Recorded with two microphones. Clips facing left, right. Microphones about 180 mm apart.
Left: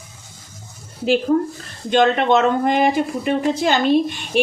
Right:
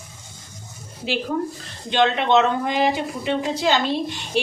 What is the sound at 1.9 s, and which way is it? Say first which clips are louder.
A woman's voice: left 3 dB; 50° left (ahead or behind).